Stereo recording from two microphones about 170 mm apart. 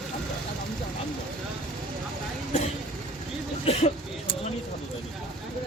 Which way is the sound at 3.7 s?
40° left (ahead or behind).